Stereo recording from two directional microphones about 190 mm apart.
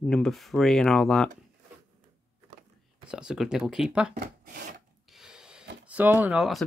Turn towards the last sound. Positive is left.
turn(degrees=0)  # may be behind; listen again after turning